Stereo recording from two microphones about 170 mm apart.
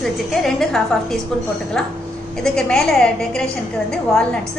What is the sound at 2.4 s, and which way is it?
A woman's voice, 5° left (ahead or behind).